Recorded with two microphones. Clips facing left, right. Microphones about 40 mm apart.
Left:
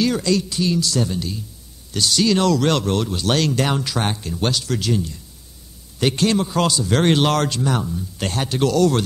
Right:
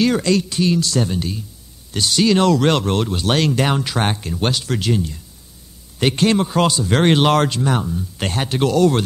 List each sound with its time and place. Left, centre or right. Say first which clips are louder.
0.0 s a man's voice: right 3 dB; right